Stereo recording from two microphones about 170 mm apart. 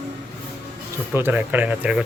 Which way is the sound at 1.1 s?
10° right (ahead or behind).